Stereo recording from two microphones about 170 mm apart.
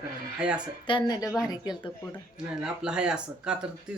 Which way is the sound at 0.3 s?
5° right (ahead or behind).